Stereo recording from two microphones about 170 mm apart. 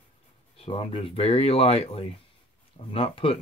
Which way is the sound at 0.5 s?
35° left (ahead or behind).